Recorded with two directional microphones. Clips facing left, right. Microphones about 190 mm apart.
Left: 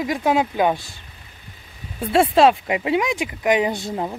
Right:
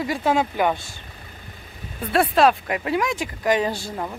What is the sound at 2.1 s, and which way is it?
Speech, 25° left (ahead or behind).